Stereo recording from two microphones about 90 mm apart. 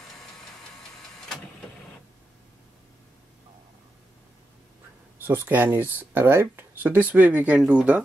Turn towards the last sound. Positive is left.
turn(degrees=-10)  # may be behind; listen again after turning